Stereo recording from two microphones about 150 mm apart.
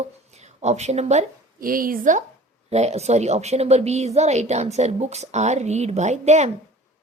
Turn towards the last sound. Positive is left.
turn(degrees=-50)  # may be behind; listen again after turning